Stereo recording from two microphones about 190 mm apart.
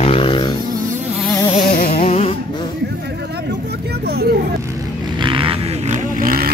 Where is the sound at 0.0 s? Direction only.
30° left (ahead or behind).